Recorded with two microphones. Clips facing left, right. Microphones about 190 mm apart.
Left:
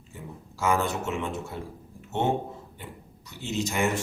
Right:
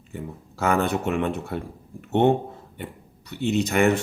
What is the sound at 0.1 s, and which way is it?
Speech, 60° right (ahead or behind).